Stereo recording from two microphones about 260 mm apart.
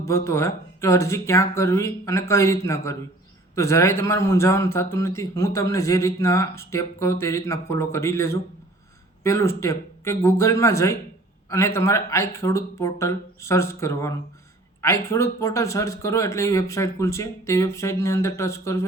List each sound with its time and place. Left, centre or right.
0.0 s speech: centre